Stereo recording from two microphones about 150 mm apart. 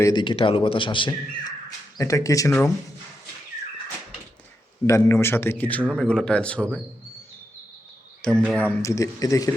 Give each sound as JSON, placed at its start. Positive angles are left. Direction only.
{"t": 0.0, "sound": "a man's voice", "side_deg": 30}
{"t": 2.0, "sound": "speech", "side_deg": 20}
{"t": 4.9, "sound": "speech", "side_deg": 20}
{"t": 8.4, "sound": "speech", "side_deg": 10}